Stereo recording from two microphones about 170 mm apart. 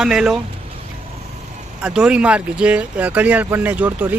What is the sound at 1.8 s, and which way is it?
Speech, 5° right (ahead or behind).